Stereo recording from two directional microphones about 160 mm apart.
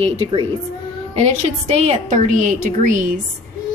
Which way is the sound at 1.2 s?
45° right (ahead or behind).